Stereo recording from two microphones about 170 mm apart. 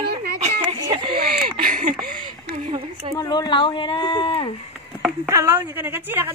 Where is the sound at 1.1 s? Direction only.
60° right (ahead or behind).